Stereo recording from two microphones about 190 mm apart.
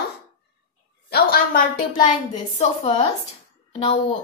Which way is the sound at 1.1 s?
50° left (ahead or behind).